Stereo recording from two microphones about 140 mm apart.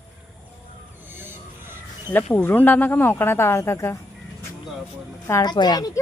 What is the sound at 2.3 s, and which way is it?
Speech, 15° left (ahead or behind).